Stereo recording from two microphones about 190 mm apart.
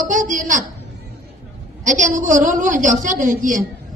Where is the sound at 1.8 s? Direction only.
40° right (ahead or behind).